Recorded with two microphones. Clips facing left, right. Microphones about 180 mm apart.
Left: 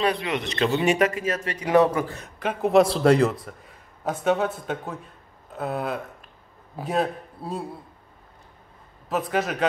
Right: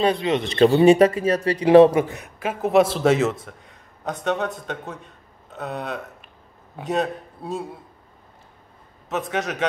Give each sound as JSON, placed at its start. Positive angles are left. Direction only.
{"t": 0.0, "sound": "speech", "side_deg": -25}
{"t": 2.3, "sound": "a man's voice", "side_deg": -5}
{"t": 9.3, "sound": "a man's voice", "side_deg": 0}